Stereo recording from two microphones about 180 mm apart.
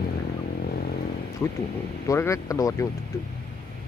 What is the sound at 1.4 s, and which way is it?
Speech, 15° left (ahead or behind).